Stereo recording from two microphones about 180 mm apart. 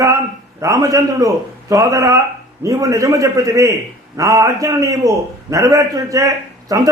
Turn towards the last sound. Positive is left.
turn(degrees=-20)  # may be behind; listen again after turning